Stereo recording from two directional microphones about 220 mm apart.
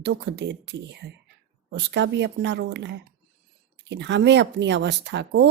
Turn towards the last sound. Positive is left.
turn(degrees=-50)  # may be behind; listen again after turning